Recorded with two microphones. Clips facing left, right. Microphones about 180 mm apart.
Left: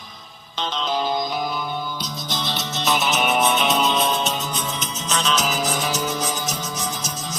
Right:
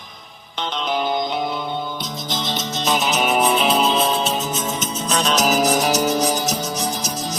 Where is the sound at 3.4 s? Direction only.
30° right (ahead or behind).